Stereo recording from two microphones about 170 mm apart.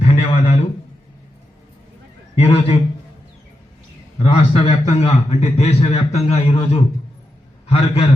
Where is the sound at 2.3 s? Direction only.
35° left (ahead or behind).